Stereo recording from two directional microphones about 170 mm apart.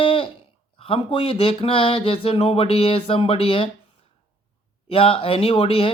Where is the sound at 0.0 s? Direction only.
30° left (ahead or behind).